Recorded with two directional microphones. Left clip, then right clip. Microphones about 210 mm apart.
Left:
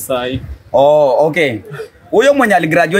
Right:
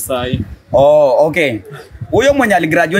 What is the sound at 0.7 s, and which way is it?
Speech, 15° right (ahead or behind).